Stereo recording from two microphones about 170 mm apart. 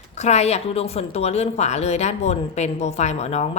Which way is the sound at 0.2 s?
40° left (ahead or behind).